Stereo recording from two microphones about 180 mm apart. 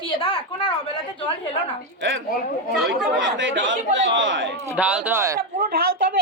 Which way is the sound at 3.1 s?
90° right.